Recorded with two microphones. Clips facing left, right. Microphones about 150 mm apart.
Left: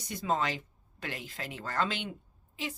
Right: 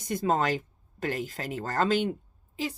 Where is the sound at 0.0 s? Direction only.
50° right (ahead or behind).